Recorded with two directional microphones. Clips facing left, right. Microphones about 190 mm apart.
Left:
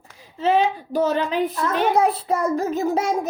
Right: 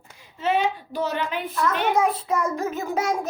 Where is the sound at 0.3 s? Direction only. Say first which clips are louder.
Left 4 dB; 35° left (ahead or behind).